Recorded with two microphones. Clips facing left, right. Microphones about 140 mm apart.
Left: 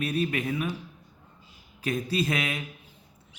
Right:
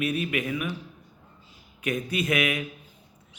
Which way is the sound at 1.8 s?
30° left (ahead or behind).